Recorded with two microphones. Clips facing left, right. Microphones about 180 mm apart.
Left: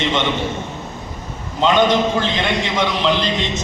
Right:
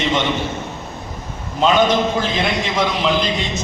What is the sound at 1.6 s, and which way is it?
A man's voice, 10° right (ahead or behind).